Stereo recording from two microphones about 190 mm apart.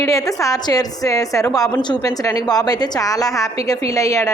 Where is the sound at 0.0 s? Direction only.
15° left (ahead or behind).